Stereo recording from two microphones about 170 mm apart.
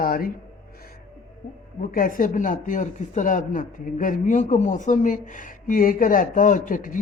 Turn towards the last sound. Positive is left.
turn(degrees=50)  # may be behind; listen again after turning